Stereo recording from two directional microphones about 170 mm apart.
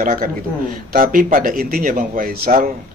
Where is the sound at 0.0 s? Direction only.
55° right (ahead or behind).